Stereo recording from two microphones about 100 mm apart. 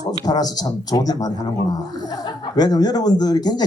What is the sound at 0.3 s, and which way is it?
Speech, 40° left (ahead or behind).